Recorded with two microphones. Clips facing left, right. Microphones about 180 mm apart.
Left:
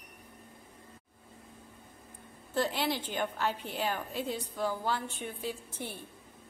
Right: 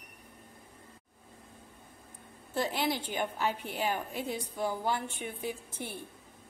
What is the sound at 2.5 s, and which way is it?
A woman's voice, 10° right (ahead or behind).